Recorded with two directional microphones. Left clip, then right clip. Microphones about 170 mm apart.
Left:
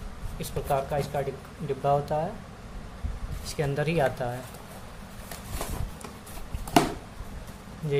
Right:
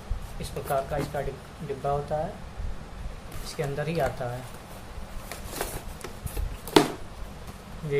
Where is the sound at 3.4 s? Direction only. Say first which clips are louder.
Left 2 dB; 30° left (ahead or behind).